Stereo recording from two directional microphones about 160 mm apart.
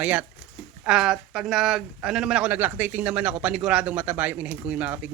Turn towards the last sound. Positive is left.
turn(degrees=-10)  # may be behind; listen again after turning